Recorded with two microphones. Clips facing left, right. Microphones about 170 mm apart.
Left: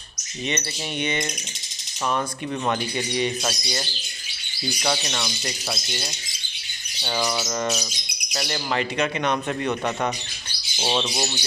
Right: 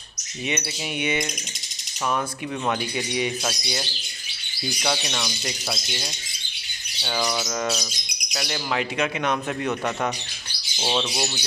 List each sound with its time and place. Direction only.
0.5 s speech: 10° right (ahead or behind)
2.1 s bird: centre (ahead or behind)